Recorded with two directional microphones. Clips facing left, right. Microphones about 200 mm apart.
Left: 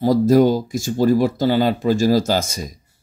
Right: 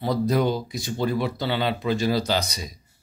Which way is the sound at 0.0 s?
45° left (ahead or behind).